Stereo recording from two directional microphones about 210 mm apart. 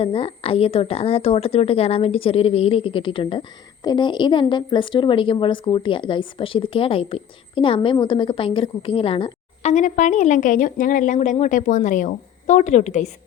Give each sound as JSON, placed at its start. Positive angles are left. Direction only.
{"t": 0.0, "sound": "speech", "side_deg": 25}